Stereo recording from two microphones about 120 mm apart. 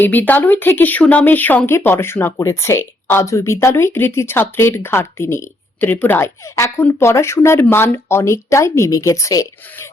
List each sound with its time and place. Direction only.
0.0 s speech: 15° left (ahead or behind)